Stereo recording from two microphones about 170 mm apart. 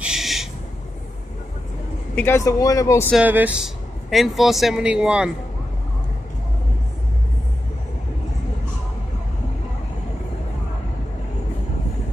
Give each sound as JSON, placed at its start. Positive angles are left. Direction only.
{"t": 0.0, "sound": "owl", "side_deg": 0}
{"t": 2.1, "sound": "speech", "side_deg": 15}
{"t": 3.2, "sound": "speech", "side_deg": -10}